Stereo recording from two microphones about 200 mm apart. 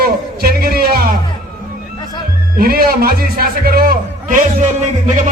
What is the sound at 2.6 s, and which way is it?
Speech, 45° right (ahead or behind).